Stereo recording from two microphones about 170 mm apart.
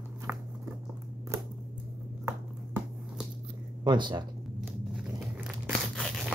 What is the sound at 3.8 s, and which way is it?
Speech, 25° right (ahead or behind).